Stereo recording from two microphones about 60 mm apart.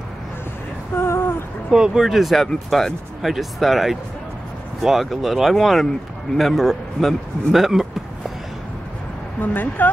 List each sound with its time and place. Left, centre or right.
0.9 s a sound: left
1.7 s a man's voice: centre
9.4 s speech: left